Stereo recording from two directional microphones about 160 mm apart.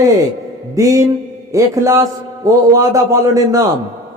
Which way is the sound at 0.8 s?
20° right (ahead or behind).